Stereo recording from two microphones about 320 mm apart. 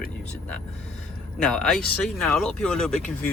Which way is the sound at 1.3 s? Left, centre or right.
Centre.